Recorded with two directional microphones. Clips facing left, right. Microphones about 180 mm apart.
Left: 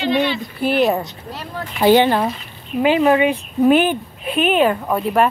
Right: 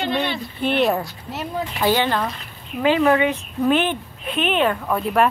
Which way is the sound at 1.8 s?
20° left (ahead or behind).